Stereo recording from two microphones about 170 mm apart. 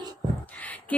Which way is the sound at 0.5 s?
10° left (ahead or behind).